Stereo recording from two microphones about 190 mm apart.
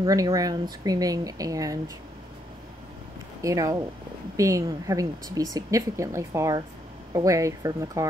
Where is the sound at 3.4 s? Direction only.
15° right (ahead or behind).